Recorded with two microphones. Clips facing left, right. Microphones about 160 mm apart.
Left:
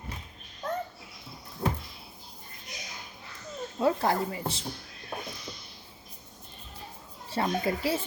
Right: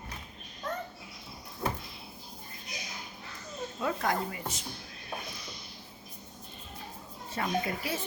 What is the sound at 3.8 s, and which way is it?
Speech, 30° left (ahead or behind).